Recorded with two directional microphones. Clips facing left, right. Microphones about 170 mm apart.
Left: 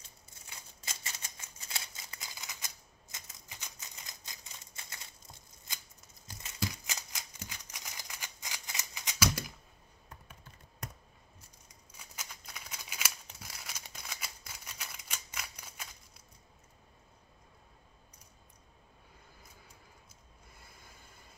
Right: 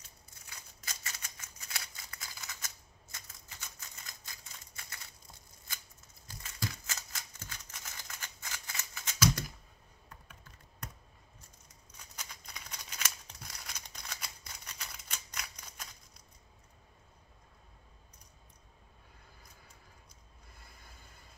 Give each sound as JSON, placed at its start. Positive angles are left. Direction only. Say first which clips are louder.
{"t": 0.5, "sound": "scissors", "louder": "left 1 dB", "side_deg": 25}
{"t": 6.4, "sound": "scissors", "louder": "left 3 dB", "side_deg": 15}
{"t": 12.0, "sound": "scissors", "louder": "left 1 dB", "side_deg": 5}